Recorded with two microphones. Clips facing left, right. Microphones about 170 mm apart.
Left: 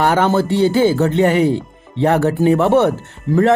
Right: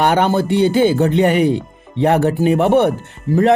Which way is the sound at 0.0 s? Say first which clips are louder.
Even; 20° right (ahead or behind).